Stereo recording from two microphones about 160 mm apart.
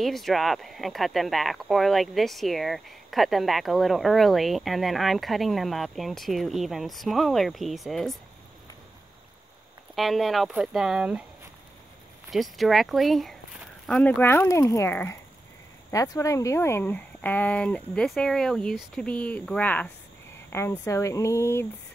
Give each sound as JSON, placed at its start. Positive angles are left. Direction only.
{"t": 0.0, "sound": "speech", "side_deg": 0}
{"t": 9.9, "sound": "speech", "side_deg": 0}
{"t": 12.3, "sound": "speech", "side_deg": 0}